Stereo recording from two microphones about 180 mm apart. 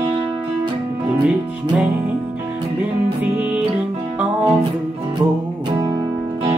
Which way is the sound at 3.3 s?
5° right (ahead or behind).